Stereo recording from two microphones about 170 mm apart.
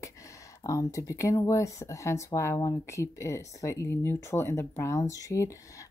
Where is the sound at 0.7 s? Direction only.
20° left (ahead or behind).